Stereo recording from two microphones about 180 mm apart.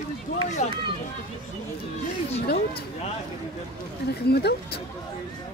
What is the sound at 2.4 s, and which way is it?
Speech, 60° left (ahead or behind).